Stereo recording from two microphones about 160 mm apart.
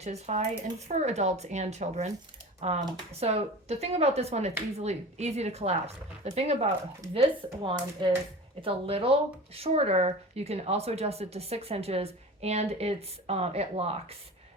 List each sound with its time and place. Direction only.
0.0 s speech: 45° right (ahead or behind)